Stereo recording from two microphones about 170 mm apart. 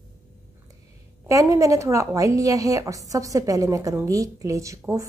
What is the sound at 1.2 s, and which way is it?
A woman's voice, 20° right (ahead or behind).